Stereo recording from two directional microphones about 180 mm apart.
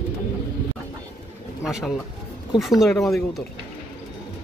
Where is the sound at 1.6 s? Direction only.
5° right (ahead or behind).